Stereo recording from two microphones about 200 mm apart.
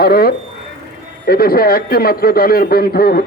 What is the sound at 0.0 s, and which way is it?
A man's voice, 50° left (ahead or behind).